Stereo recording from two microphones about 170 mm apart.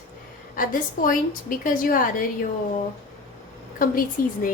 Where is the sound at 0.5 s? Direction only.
55° left (ahead or behind).